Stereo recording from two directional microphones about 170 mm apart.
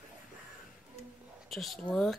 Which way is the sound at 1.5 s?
Centre (ahead or behind).